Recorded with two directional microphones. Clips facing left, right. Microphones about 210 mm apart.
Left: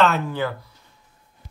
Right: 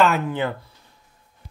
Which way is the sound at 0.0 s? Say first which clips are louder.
Right 1 dB; 15° right (ahead or behind).